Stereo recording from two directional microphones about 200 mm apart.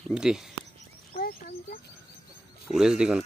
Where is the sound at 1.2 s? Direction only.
50° left (ahead or behind).